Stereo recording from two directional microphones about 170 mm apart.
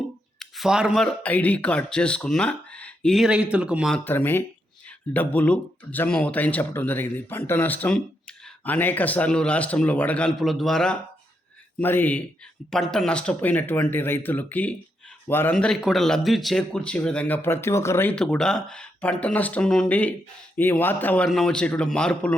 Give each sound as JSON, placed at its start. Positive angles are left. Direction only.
{"t": 0.3, "sound": "speech", "side_deg": 0}
{"t": 4.0, "sound": "speech", "side_deg": 10}
{"t": 15.5, "sound": "speech", "side_deg": 5}